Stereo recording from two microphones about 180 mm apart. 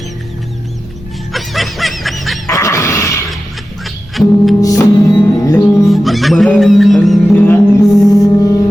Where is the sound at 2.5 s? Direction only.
15° left (ahead or behind).